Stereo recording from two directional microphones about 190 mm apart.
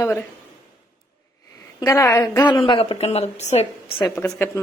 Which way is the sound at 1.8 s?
15° left (ahead or behind).